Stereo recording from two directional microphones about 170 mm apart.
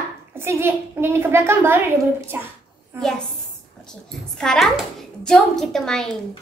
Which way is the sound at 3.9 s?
5° left (ahead or behind).